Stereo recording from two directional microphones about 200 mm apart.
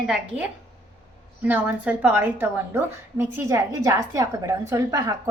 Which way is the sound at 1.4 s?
10° right (ahead or behind).